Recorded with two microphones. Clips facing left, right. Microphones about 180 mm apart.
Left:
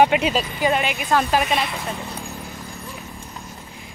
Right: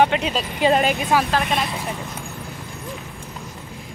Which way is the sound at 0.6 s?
40° right (ahead or behind).